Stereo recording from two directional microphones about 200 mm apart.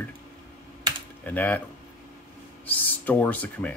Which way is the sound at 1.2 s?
10° left (ahead or behind).